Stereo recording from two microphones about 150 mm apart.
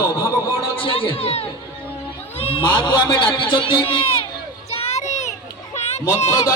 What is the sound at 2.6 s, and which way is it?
A man's voice, 30° left (ahead or behind).